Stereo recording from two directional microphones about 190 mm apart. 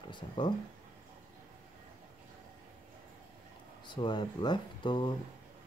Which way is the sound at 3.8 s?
25° left (ahead or behind).